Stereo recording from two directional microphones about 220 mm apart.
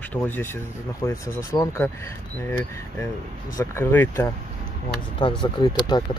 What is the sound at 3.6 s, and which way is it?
Speech, 10° left (ahead or behind).